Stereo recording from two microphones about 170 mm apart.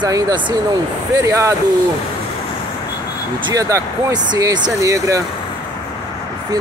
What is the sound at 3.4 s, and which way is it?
Speech, 20° right (ahead or behind).